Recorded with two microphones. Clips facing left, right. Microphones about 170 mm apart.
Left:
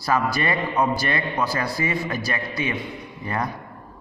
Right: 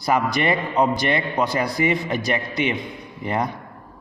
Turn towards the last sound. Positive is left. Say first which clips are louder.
# right 3 dB
turn(degrees=-20)  # may be behind; listen again after turning